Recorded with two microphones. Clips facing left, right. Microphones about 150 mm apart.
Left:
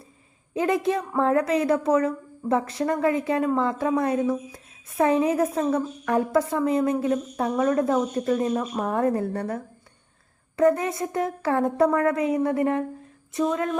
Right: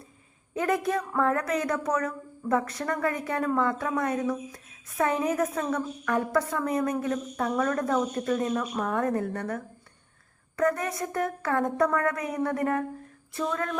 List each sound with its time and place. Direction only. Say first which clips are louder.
0.5 s a woman's voice: left 3 dB; 25° left (ahead or behind)